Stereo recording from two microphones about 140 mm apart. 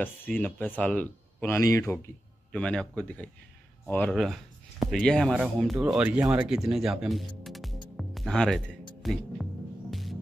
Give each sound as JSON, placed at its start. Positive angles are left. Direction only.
{"t": 0.0, "sound": "speech", "side_deg": 10}
{"t": 1.6, "sound": "speech", "side_deg": 20}
{"t": 2.5, "sound": "speech", "side_deg": 5}
{"t": 4.1, "sound": "speech", "side_deg": 0}
{"t": 6.3, "sound": "music", "side_deg": -5}